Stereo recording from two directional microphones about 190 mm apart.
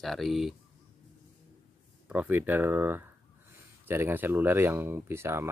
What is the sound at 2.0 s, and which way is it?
Speech, 10° right (ahead or behind).